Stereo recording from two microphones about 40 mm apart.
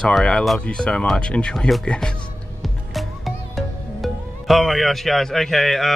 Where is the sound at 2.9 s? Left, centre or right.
Centre.